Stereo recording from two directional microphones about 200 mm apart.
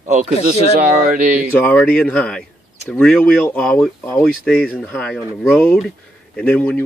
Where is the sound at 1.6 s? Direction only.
5° left (ahead or behind).